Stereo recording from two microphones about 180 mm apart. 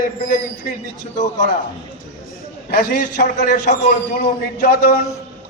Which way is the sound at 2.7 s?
50° left (ahead or behind).